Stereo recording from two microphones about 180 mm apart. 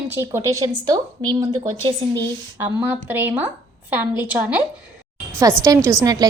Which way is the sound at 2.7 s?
10° right (ahead or behind).